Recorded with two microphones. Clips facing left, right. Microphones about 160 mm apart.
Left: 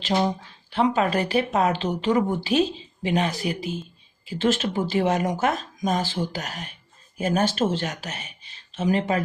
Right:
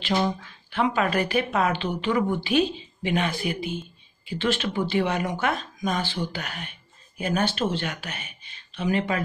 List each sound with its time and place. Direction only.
0.0 s speech: 35° left (ahead or behind)